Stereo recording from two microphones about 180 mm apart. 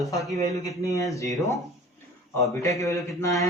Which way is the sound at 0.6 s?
20° left (ahead or behind).